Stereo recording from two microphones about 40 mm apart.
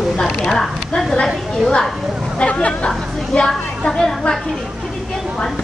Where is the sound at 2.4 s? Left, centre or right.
Left.